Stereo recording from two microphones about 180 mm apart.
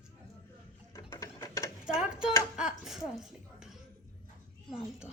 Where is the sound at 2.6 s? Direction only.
5° right (ahead or behind).